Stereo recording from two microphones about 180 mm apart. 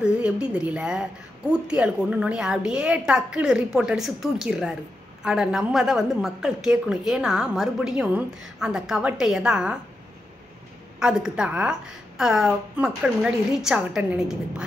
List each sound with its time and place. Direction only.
0.0 s a woman's voice: 5° right (ahead or behind)
11.0 s a woman's voice: 5° right (ahead or behind)